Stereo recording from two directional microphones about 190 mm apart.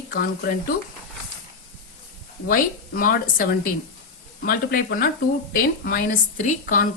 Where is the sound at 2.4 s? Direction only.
50° left (ahead or behind).